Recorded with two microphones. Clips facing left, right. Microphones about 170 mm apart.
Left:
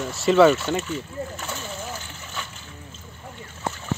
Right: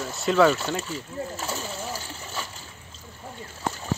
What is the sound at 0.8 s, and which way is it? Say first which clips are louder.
Speech: left 3 dB; 35° right (ahead or behind).